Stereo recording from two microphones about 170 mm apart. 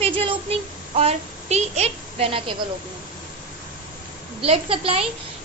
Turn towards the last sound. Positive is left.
turn(degrees=-30)  # may be behind; listen again after turning